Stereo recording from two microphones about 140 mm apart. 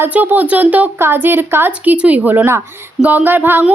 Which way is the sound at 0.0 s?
15° right (ahead or behind).